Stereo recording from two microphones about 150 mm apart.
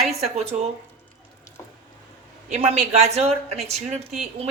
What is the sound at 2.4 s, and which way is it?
Speech, 50° right (ahead or behind).